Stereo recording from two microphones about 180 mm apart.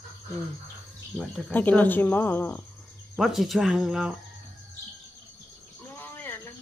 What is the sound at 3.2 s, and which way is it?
Speech, centre (ahead or behind).